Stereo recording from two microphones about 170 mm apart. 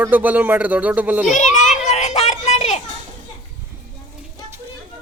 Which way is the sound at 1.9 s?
40° left (ahead or behind).